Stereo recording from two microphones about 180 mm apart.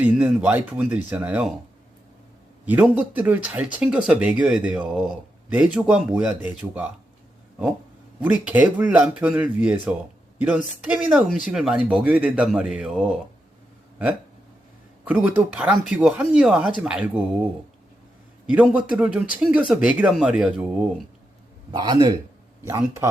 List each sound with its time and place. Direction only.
0.0 s speech: 10° right (ahead or behind)
2.6 s speech: 10° right (ahead or behind)
8.2 s speech: 10° right (ahead or behind)
15.0 s speech: 10° right (ahead or behind)
18.4 s speech: 5° right (ahead or behind)
21.7 s a man's voice: 25° right (ahead or behind)